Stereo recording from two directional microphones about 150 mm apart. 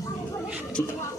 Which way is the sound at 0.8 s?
20° left (ahead or behind).